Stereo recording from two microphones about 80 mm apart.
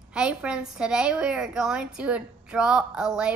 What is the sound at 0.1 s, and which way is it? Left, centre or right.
A woman's voice, centre.